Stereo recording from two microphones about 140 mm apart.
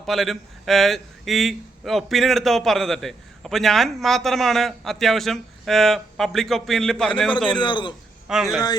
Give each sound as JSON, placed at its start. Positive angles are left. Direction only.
{"t": 0.0, "sound": "a man's voice", "side_deg": 0}
{"t": 7.6, "sound": "a man's voice", "side_deg": 35}
{"t": 8.3, "sound": "a man's voice", "side_deg": 0}